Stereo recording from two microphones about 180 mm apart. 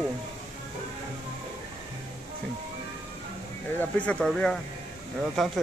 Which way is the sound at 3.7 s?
5° left (ahead or behind).